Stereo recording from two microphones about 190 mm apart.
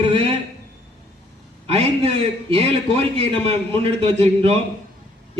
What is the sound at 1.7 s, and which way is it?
A man's voice, 30° right (ahead or behind).